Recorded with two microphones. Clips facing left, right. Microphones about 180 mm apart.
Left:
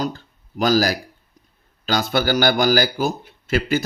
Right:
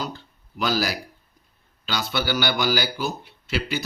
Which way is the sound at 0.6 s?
45° left (ahead or behind).